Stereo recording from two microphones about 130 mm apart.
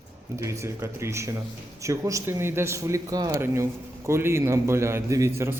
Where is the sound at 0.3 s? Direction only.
20° right (ahead or behind).